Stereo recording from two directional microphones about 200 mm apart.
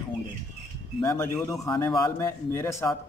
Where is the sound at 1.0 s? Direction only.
15° left (ahead or behind).